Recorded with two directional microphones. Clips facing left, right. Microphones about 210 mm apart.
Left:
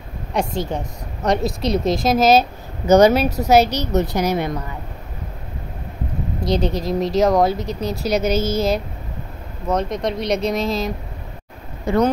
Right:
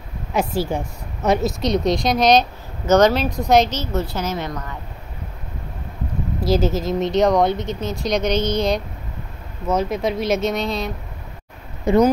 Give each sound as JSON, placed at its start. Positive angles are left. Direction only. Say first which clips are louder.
{"t": 0.3, "sound": "a woman's voice", "louder": "right 1 dB", "side_deg": -5}
{"t": 6.4, "sound": "speech", "louder": "right 1 dB", "side_deg": -5}
{"t": 11.9, "sound": "speech", "louder": "right 3 dB", "side_deg": -20}